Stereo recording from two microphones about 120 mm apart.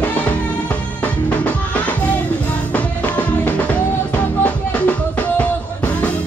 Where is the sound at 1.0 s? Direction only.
10° left (ahead or behind).